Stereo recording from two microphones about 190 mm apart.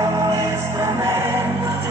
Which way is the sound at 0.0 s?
15° right (ahead or behind).